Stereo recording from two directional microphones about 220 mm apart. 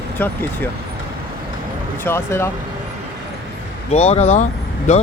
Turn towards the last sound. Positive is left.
turn(degrees=30)  # may be behind; listen again after turning